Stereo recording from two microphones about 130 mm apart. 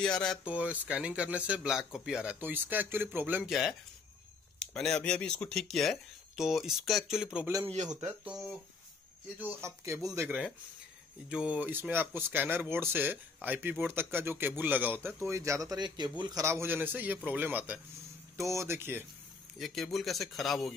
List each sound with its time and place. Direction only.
0.0 s speech: 5° left (ahead or behind)
0.5 s speech: 10° right (ahead or behind)
3.4 s speech: 5° right (ahead or behind)
7.7 s speech: 65° right (ahead or behind)
8.2 s speech: 5° right (ahead or behind)
9.4 s a man's voice: 15° right (ahead or behind)
11.2 s a man's voice: 10° right (ahead or behind)
18.4 s a man's voice: 20° right (ahead or behind)
19.6 s speech: centre (ahead or behind)